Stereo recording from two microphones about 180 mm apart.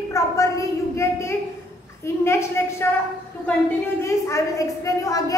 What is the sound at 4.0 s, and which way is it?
A woman's voice, 15° left (ahead or behind).